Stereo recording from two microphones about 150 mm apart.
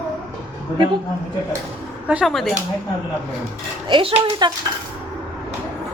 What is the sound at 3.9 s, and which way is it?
Speech, 30° right (ahead or behind).